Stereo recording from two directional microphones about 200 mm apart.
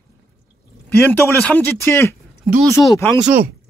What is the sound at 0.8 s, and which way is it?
Speech, 5° left (ahead or behind).